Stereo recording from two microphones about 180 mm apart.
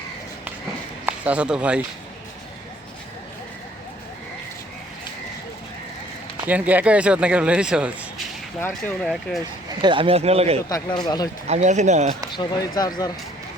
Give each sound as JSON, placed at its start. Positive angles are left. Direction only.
{"t": 1.0, "sound": "speech", "side_deg": -5}
{"t": 6.5, "sound": "speech", "side_deg": -10}
{"t": 9.8, "sound": "speech", "side_deg": -30}
{"t": 10.7, "sound": "speech", "side_deg": 20}
{"t": 11.4, "sound": "speech", "side_deg": -40}
{"t": 12.3, "sound": "speech", "side_deg": 25}